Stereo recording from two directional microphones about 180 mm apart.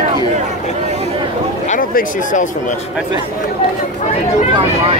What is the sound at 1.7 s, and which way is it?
Speech, 45° left (ahead or behind).